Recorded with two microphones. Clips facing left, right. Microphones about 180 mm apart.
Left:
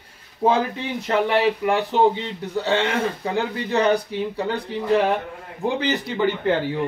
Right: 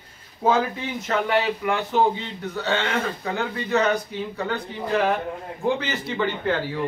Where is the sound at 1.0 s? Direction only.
35° left (ahead or behind).